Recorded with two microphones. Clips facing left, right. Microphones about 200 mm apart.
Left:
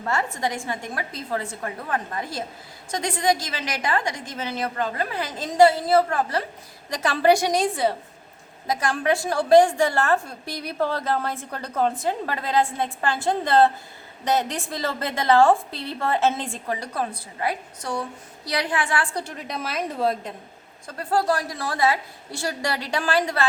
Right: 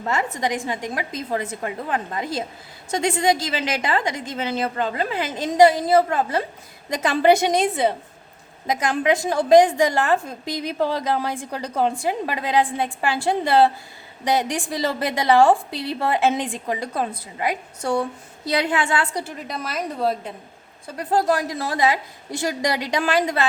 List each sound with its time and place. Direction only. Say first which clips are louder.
0.1 s a woman's voice: right 2 dB; 20° right (ahead or behind)
19.1 s a woman's voice: right 1 dB; 5° right (ahead or behind)
20.8 s a woman's voice: right 2 dB; 15° right (ahead or behind)